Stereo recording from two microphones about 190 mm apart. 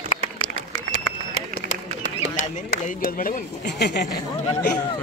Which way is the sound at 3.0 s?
50° left (ahead or behind).